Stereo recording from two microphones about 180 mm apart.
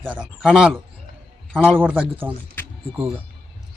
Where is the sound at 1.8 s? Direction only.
10° right (ahead or behind).